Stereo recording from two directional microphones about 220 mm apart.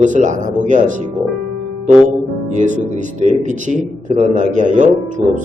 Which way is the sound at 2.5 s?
35° right (ahead or behind).